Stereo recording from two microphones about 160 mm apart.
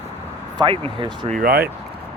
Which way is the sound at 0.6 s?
35° right (ahead or behind).